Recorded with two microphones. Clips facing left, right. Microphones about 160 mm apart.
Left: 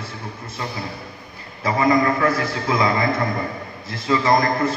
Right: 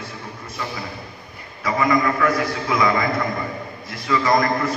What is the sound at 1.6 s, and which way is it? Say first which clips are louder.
A man's voice: left 2 dB; 30° left (ahead or behind).